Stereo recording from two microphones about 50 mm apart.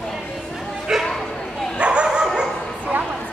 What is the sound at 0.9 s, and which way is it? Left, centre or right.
Bow-wow, centre.